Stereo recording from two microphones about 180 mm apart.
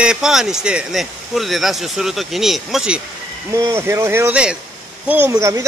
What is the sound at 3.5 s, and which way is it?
Speech, 15° right (ahead or behind).